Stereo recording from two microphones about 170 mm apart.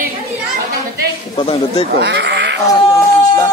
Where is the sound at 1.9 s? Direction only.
85° right.